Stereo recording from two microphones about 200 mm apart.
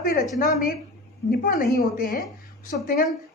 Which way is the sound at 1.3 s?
45° left (ahead or behind).